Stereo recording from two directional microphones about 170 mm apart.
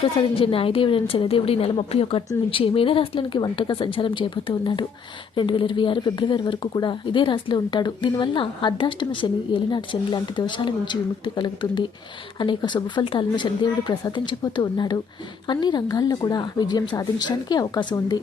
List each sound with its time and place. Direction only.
0.0 s a woman's voice: 30° left (ahead or behind)